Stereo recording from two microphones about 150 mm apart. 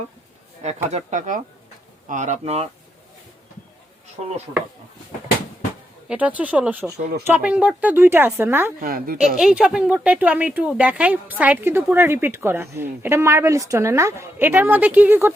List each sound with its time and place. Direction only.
0.6 s speech: 45° right (ahead or behind)
2.4 s speech: 40° right (ahead or behind)
6.1 s speech: 10° right (ahead or behind)
8.8 s a woman's voice: 70° right (ahead or behind)
9.4 s speech: 5° right (ahead or behind)